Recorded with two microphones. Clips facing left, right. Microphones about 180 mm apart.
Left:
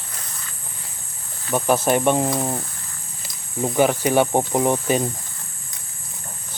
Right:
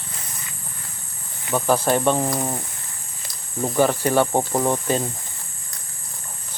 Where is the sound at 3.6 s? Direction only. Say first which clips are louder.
Left 1 dB; 10° left (ahead or behind).